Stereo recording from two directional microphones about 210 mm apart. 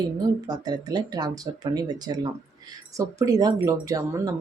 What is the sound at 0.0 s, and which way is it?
A woman's voice, 20° right (ahead or behind).